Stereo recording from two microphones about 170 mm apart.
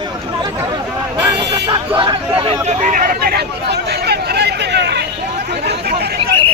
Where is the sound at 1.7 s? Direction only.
30° right (ahead or behind); by 5.0 s 85° right.